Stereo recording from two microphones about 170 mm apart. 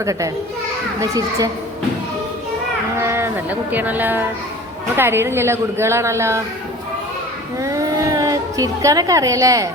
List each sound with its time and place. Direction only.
0.0 s a child's voice: 20° right (ahead or behind)
3.0 s a woman's voice: 15° right (ahead or behind)
7.6 s a sound: 20° right (ahead or behind)